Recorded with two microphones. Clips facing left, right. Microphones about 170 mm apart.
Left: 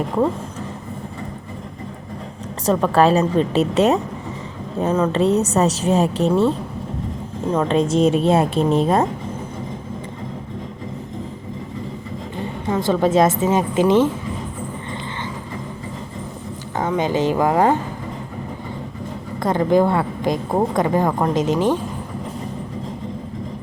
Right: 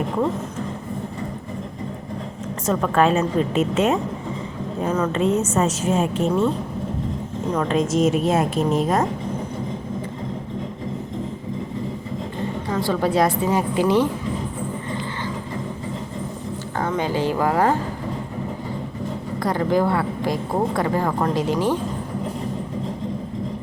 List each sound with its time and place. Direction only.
2.6 s a woman's voice: 35° left (ahead or behind)
7.5 s a woman's voice: 30° left (ahead or behind)
12.6 s speech: 25° left (ahead or behind)
16.7 s speech: 20° left (ahead or behind)
19.4 s speech: 20° left (ahead or behind)